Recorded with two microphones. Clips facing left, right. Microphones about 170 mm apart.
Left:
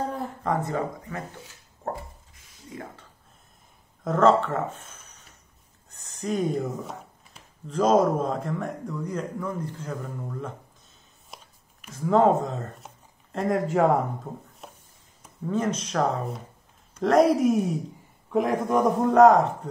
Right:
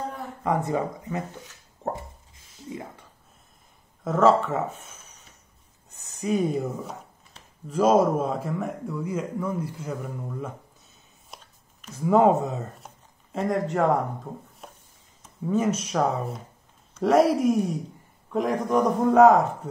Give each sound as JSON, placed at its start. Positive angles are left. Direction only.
{"t": 0.4, "sound": "speech", "side_deg": -15}
{"t": 1.8, "sound": "a sound", "side_deg": -20}
{"t": 2.7, "sound": "speech", "side_deg": -15}
{"t": 4.0, "sound": "a man's voice", "side_deg": -5}
{"t": 11.2, "sound": "a sound", "side_deg": 5}
{"t": 12.0, "sound": "a man's voice", "side_deg": -10}